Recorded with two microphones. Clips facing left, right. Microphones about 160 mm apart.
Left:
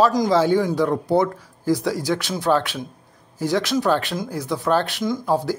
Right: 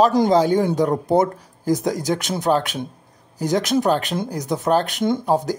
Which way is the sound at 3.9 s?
20° right (ahead or behind).